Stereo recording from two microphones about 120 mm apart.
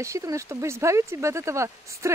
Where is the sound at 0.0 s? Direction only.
25° right (ahead or behind).